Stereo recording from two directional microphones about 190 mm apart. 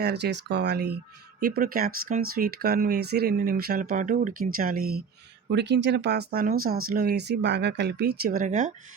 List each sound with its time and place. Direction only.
0.0 s speech: 60° right (ahead or behind)
1.4 s speech: 50° right (ahead or behind)
5.5 s speech: 65° right (ahead or behind); by 8.7 s 40° right (ahead or behind)